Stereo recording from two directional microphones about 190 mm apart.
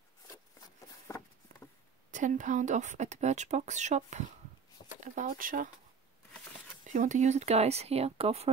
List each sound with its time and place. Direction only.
0.6 s a sound: 15° left (ahead or behind)
2.0 s speech: 40° right (ahead or behind)
6.9 s speech: 40° right (ahead or behind)